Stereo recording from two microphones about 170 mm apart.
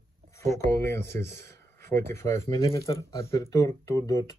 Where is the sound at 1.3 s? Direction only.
15° left (ahead or behind).